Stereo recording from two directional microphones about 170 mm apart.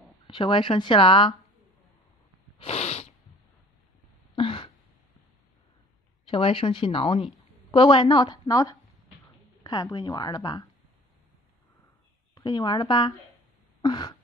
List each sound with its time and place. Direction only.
0.3 s a woman's voice: 30° left (ahead or behind)
2.6 s sneeze: 40° left (ahead or behind)
4.4 s a sound: 30° left (ahead or behind)
6.2 s a woman's voice: 30° left (ahead or behind)
12.4 s a woman's voice: 25° left (ahead or behind)
13.7 s a sound: 25° left (ahead or behind)